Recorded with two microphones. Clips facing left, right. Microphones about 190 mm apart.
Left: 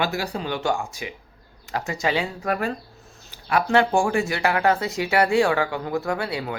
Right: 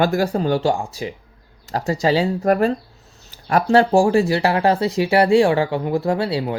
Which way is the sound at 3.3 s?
40° right (ahead or behind).